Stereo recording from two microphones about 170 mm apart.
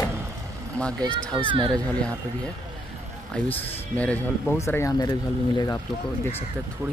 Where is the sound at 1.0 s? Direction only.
25° right (ahead or behind).